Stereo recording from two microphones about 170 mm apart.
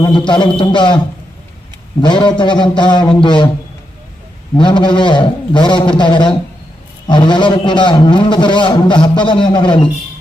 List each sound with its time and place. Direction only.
0.0 s a man's voice: 25° left (ahead or behind)
2.0 s a man's voice: 30° left (ahead or behind)
4.5 s a man's voice: 30° left (ahead or behind)